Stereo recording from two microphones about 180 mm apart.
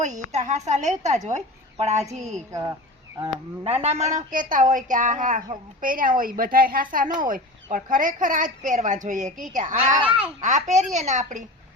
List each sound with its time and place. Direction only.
0.0 s a woman's voice: 40° right (ahead or behind)
2.5 s speech: 15° right (ahead or behind)
3.2 s a woman's voice: 30° right (ahead or behind)
9.9 s speech: 30° right (ahead or behind)
10.4 s a woman's voice: 40° right (ahead or behind)